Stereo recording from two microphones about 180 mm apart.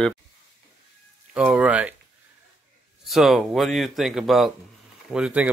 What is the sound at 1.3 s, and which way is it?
Speech, 5° right (ahead or behind).